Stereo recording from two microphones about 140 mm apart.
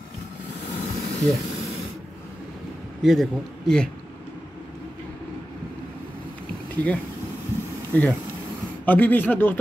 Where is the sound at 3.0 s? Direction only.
Centre (ahead or behind).